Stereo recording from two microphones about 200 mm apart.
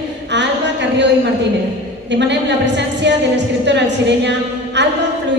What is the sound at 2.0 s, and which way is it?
A woman's voice, 60° right (ahead or behind).